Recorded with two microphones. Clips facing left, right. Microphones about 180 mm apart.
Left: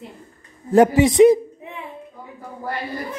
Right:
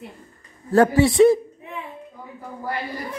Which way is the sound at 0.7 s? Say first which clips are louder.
Left 2 dB; 20° left (ahead or behind).